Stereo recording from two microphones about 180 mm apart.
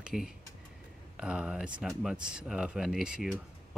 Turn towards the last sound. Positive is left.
turn(degrees=-5)  # may be behind; listen again after turning